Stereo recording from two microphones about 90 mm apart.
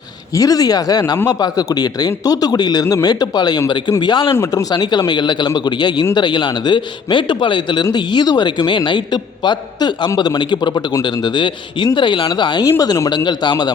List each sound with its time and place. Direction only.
0.3 s a man's voice: 40° left (ahead or behind); by 7.9 s 60° left (ahead or behind)
7.9 s a man's voice: 50° left (ahead or behind)